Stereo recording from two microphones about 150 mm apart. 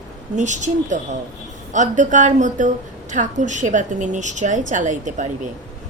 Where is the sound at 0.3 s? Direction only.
55° right (ahead or behind).